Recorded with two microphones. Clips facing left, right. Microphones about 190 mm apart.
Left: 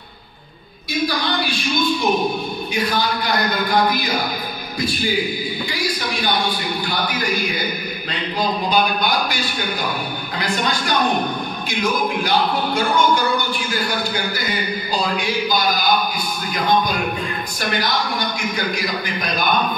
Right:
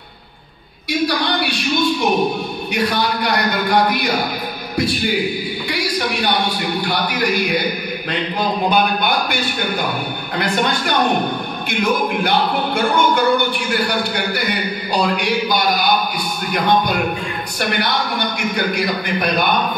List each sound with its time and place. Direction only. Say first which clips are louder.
1.0 s a sound: right 2 dB; 70° right (ahead or behind)
2.7 s a man's voice: right 3 dB; 70° right (ahead or behind)
5.7 s a sound: right 6 dB; 70° right (ahead or behind)
6.9 s a man's voice: right 3 dB; 70° right (ahead or behind)
8.6 s a man's voice: right 3 dB; 55° right (ahead or behind)
10.3 s music: right 4 dB; 60° right (ahead or behind)
13.7 s a man's voice: right 3 dB; 70° right (ahead or behind)
18.8 s music: right 5 dB; 60° right (ahead or behind)